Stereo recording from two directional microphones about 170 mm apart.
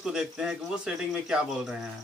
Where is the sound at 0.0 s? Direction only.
5° right (ahead or behind).